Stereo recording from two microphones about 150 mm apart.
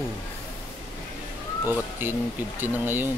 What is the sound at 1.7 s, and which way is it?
Speech, 15° right (ahead or behind).